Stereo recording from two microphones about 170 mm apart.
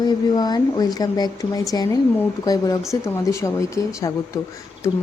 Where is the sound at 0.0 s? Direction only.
25° left (ahead or behind).